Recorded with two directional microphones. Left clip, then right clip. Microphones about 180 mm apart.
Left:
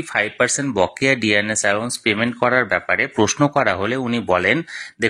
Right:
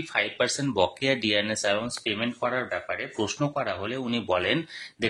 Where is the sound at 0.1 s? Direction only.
30° left (ahead or behind).